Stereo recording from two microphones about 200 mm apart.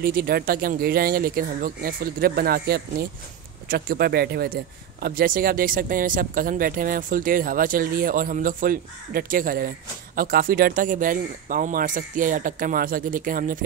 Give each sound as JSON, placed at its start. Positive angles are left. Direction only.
{"t": 0.0, "sound": "speech", "side_deg": -45}